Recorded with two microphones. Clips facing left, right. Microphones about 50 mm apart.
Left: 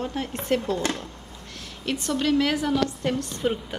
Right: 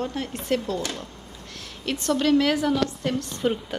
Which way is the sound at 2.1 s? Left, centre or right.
Centre.